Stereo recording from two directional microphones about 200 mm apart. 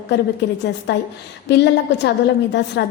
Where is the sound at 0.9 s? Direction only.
55° left (ahead or behind).